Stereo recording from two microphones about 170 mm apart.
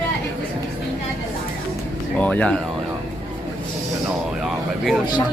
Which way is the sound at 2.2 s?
5° left (ahead or behind).